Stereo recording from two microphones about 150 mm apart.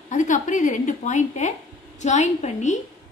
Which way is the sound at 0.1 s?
55° left (ahead or behind).